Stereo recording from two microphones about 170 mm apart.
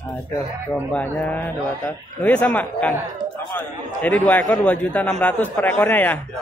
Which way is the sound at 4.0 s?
10° left (ahead or behind).